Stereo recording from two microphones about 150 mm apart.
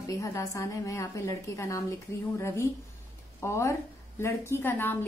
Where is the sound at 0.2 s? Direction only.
20° left (ahead or behind).